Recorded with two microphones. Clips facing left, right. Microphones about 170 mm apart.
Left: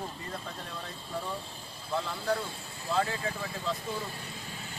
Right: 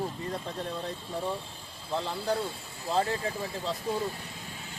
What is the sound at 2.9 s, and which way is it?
Speech, 30° right (ahead or behind).